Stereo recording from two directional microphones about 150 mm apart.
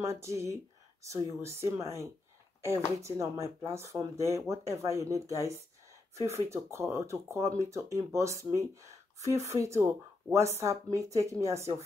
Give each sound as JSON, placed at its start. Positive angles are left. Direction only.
{"t": 0.0, "sound": "speech", "side_deg": -20}